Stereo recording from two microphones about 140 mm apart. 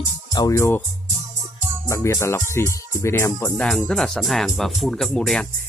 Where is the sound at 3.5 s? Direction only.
5° left (ahead or behind).